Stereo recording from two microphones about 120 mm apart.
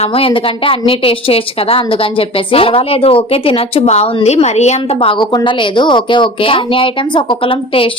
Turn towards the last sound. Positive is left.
turn(degrees=50)  # may be behind; listen again after turning